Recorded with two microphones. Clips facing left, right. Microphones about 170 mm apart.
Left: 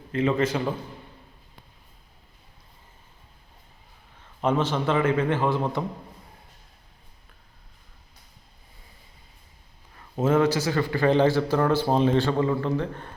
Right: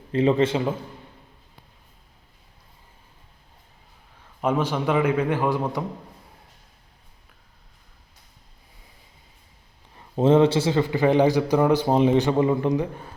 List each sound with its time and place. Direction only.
0.1 s a man's voice: 30° right (ahead or behind)
4.4 s a man's voice: 10° right (ahead or behind)
9.9 s a man's voice: 25° right (ahead or behind); by 13.1 s 10° right (ahead or behind)